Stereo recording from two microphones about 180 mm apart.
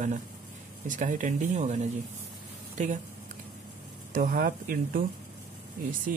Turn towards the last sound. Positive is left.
turn(degrees=-50)  # may be behind; listen again after turning